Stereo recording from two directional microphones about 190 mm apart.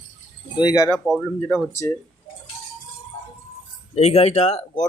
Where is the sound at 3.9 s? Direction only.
35° left (ahead or behind).